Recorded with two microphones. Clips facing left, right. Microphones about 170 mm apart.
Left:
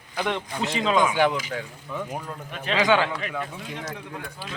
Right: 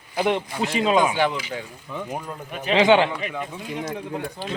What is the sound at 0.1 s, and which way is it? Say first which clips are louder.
Speech: right 5 dB; 25° right (ahead or behind).